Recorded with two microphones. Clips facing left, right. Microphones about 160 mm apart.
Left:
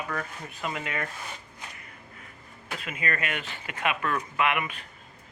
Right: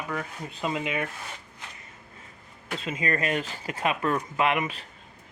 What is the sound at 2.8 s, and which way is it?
Speech, 30° right (ahead or behind).